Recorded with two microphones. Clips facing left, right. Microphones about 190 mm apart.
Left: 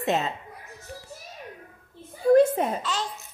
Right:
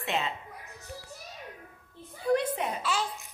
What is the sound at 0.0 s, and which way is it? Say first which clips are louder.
Speech: left 6 dB; 40° left (ahead or behind).